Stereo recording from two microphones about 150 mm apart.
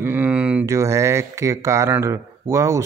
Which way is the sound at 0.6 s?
20° right (ahead or behind).